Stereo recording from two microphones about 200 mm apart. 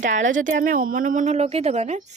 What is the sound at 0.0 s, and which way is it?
A woman's voice, 40° right (ahead or behind).